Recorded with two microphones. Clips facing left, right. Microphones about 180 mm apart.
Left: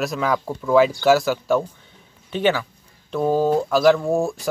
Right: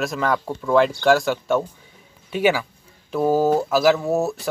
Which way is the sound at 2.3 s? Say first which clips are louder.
Right 1 dB; 10° right (ahead or behind).